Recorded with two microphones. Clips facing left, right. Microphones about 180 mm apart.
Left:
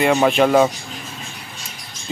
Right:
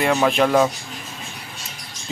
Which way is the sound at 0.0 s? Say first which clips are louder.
Left 3 dB; centre (ahead or behind).